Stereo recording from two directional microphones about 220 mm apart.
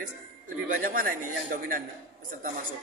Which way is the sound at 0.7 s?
40° right (ahead or behind).